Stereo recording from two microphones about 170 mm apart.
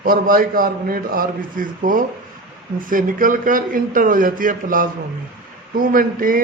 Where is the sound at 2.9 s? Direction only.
55° right (ahead or behind).